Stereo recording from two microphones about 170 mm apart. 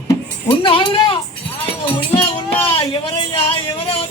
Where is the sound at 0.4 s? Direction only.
30° left (ahead or behind).